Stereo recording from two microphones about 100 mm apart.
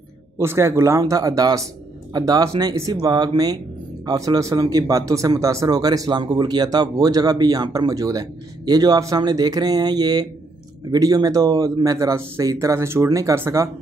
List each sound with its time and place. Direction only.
0.4 s speech: 25° right (ahead or behind)